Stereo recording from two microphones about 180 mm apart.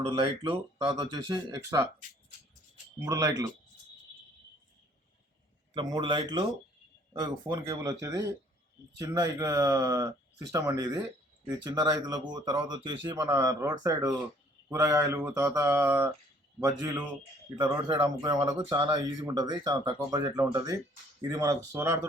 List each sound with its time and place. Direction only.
0.0 s speech: 25° right (ahead or behind)
3.0 s speech: 20° right (ahead or behind)
5.7 s speech: 25° right (ahead or behind)
18.0 s speech: 20° right (ahead or behind)